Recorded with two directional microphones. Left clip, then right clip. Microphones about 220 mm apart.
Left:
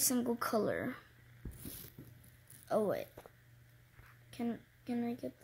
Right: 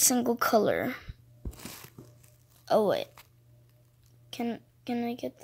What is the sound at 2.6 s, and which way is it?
Speech, 25° right (ahead or behind).